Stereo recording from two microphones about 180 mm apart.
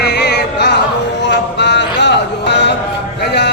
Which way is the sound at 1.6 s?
75° left (ahead or behind).